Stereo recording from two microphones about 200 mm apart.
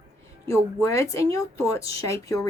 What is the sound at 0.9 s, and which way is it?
Speech, 15° left (ahead or behind).